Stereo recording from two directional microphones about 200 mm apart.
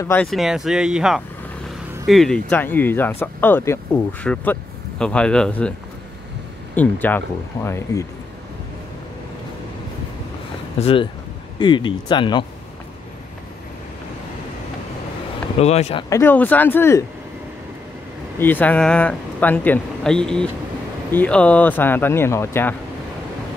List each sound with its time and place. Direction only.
0.0 s speech: 5° left (ahead or behind)
10.8 s speech: 30° left (ahead or behind)
15.6 s speech: 30° left (ahead or behind)
16.1 s speech: 10° left (ahead or behind)
18.4 s speech: 10° left (ahead or behind)